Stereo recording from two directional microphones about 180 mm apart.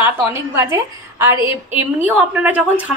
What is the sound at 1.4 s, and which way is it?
Speech, 30° left (ahead or behind).